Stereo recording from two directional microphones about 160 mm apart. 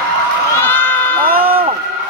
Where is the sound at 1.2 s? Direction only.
65° right (ahead or behind).